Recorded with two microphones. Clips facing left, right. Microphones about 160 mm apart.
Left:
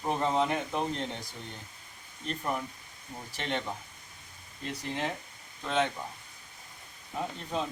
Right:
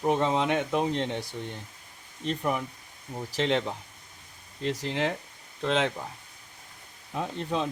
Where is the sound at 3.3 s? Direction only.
90° right.